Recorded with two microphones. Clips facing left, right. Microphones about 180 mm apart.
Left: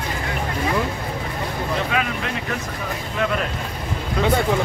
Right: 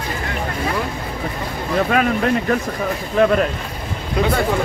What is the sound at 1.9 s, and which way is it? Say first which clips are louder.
Speech: right 7 dB; 45° right (ahead or behind).